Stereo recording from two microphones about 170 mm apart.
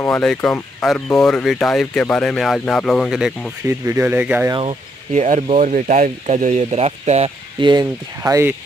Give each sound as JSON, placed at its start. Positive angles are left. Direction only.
{"t": 0.0, "sound": "speech", "side_deg": 5}
{"t": 3.6, "sound": "speech", "side_deg": -15}
{"t": 4.6, "sound": "speech", "side_deg": -45}
{"t": 8.2, "sound": "speech", "side_deg": -15}